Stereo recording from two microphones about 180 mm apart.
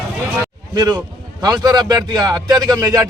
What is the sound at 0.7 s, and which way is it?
Speech, 20° right (ahead or behind).